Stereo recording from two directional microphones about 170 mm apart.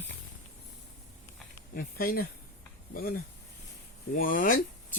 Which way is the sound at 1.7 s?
60° left (ahead or behind).